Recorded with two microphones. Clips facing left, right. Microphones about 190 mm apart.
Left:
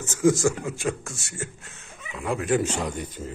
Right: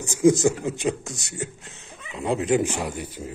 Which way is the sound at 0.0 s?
15° right (ahead or behind).